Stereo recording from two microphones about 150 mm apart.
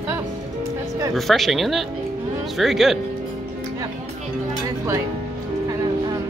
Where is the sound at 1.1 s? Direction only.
Centre (ahead or behind).